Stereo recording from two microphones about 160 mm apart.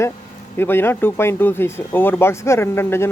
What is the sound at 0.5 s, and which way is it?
Speech, 15° left (ahead or behind).